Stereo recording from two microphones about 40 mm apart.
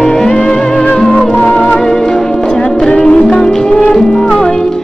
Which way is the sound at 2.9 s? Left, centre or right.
Left.